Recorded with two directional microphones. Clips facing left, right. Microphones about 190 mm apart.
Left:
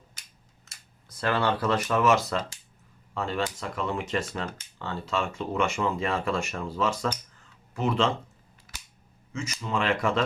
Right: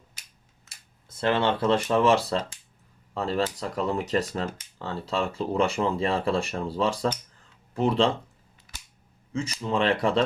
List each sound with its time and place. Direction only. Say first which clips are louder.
1.0 s speech: right 2 dB; 25° right (ahead or behind)
9.3 s speech: right 3 dB; 35° right (ahead or behind)